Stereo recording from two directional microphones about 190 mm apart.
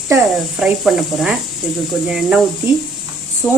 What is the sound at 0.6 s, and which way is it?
Speech, 5° right (ahead or behind).